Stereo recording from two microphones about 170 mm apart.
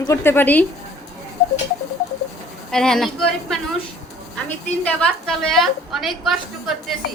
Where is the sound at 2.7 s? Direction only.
5° left (ahead or behind).